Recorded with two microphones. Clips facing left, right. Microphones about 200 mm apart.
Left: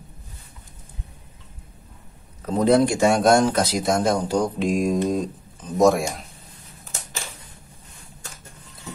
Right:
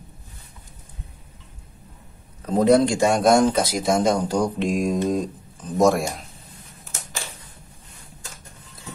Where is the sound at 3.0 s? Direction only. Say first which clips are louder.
Even; 5° left (ahead or behind).